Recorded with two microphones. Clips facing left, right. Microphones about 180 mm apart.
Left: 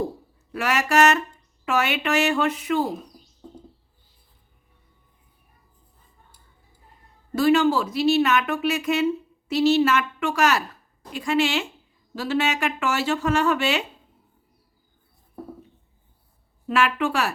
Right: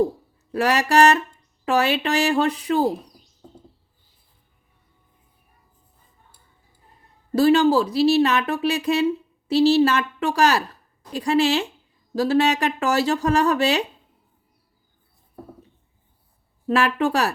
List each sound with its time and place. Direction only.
0.5 s speech: 35° right (ahead or behind)
7.3 s a woman's voice: 35° right (ahead or behind)
16.6 s speech: 35° right (ahead or behind)